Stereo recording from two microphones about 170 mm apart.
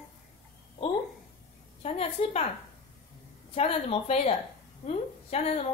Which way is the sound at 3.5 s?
35° left (ahead or behind).